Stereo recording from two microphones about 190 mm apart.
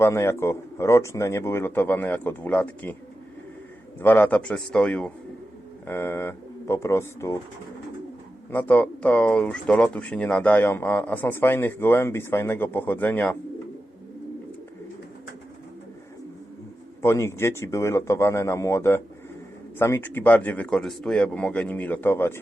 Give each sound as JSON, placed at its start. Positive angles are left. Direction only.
{"t": 0.0, "sound": "speech", "side_deg": 15}
{"t": 4.0, "sound": "speech", "side_deg": 10}
{"t": 8.4, "sound": "speech", "side_deg": 10}
{"t": 17.0, "sound": "speech", "side_deg": 15}